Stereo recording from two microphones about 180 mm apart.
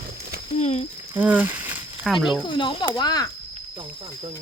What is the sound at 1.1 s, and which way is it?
Speech, 10° right (ahead or behind).